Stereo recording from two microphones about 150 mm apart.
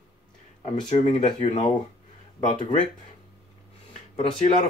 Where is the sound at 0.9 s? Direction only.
50° left (ahead or behind).